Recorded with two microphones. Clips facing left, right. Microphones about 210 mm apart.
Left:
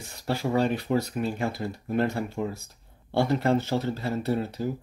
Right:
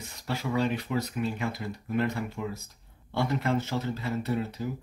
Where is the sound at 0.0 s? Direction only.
30° left (ahead or behind).